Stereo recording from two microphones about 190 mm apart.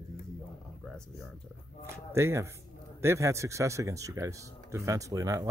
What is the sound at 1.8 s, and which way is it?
Speech, 15° right (ahead or behind).